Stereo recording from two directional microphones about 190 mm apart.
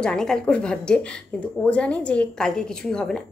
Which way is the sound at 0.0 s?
5° left (ahead or behind).